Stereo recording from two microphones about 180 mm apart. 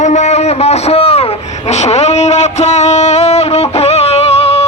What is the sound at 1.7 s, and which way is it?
Music, 40° left (ahead or behind).